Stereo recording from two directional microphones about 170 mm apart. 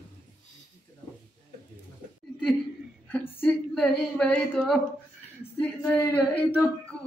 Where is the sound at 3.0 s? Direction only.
10° left (ahead or behind).